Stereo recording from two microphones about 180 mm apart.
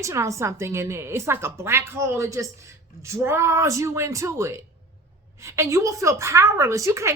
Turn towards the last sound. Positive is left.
turn(degrees=-15)  # may be behind; listen again after turning